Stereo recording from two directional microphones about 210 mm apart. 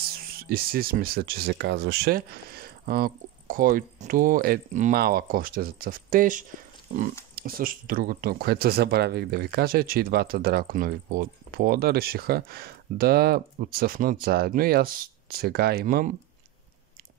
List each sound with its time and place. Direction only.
0.1 s speech: 45° right (ahead or behind)